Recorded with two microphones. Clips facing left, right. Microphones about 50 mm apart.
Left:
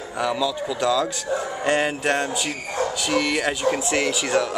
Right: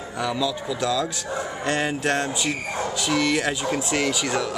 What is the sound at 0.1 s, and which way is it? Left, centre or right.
A man's voice, centre.